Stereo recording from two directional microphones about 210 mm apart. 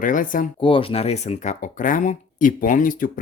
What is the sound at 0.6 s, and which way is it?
Speech, 25° left (ahead or behind).